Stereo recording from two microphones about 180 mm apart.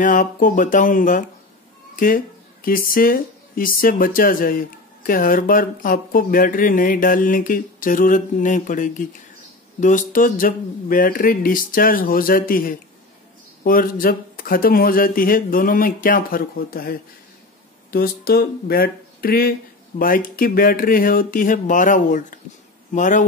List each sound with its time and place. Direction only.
0.0 s speech: 45° left (ahead or behind)